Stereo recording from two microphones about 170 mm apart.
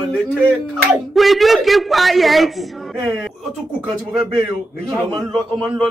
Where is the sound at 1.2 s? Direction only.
Centre (ahead or behind).